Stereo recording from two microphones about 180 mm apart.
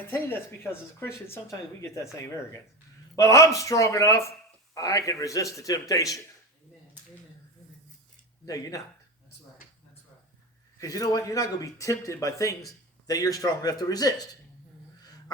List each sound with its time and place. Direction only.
0.1 s speech: 10° left (ahead or behind)
3.2 s speech: 15° left (ahead or behind)
8.4 s speech: 20° left (ahead or behind)
10.8 s speech: 20° left (ahead or behind)